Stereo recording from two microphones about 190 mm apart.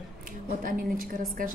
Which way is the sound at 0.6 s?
45° right (ahead or behind).